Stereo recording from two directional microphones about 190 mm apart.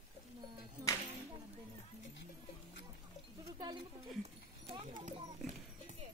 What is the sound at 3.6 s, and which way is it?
Speech, 20° right (ahead or behind).